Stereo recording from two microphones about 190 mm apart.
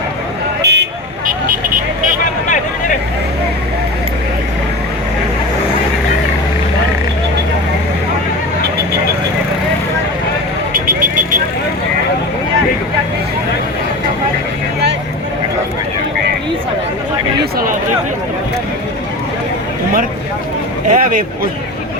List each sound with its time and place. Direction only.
0.6 s vehicle: 65° right (ahead or behind)
1.3 s vehicle: 45° right (ahead or behind)
20.9 s a sound: 45° right (ahead or behind)